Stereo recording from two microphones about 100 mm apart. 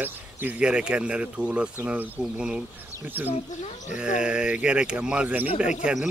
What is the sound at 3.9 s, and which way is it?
Speech, 10° right (ahead or behind).